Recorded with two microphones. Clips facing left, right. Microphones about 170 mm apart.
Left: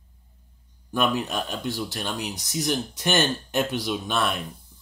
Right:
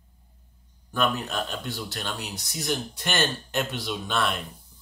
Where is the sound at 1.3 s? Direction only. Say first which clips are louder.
Left 3 dB; 15° left (ahead or behind).